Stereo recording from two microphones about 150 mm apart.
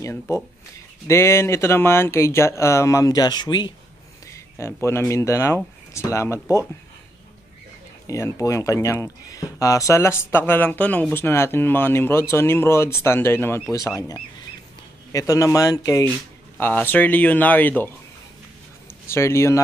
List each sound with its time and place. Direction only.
0.0 s speech: 20° left (ahead or behind)
8.1 s speech: 20° left (ahead or behind)
19.0 s speech: 15° left (ahead or behind)